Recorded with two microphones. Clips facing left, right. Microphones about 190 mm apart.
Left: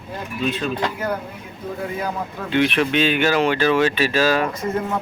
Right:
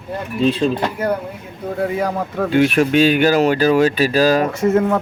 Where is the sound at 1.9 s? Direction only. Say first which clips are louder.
Right 6 dB; 80° right.